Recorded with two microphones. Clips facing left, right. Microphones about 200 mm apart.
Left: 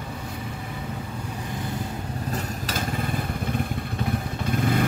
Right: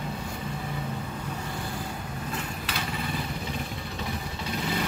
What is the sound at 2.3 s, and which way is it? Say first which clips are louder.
Motorcycle: left 4 dB; 40° left (ahead or behind).